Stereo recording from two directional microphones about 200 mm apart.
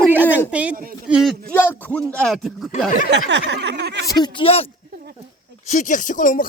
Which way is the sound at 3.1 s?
60° right (ahead or behind).